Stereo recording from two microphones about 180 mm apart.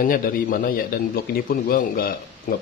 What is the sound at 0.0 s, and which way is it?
Speech, 50° left (ahead or behind).